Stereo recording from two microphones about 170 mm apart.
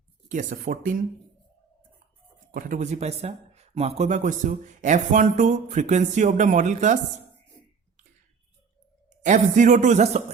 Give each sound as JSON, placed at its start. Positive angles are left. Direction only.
{"t": 0.3, "sound": "speech", "side_deg": -50}
{"t": 2.5, "sound": "speech", "side_deg": -55}
{"t": 9.2, "sound": "speech", "side_deg": -45}